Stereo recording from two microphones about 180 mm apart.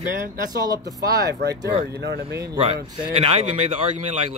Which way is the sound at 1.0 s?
60° right (ahead or behind).